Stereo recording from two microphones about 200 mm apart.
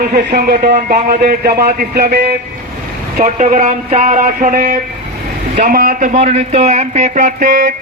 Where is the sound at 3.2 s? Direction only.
40° right (ahead or behind).